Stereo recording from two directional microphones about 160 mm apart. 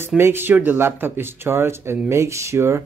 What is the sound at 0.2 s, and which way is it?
Speech, 15° right (ahead or behind).